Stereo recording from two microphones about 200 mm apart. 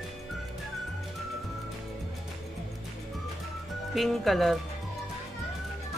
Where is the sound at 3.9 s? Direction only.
Centre (ahead or behind).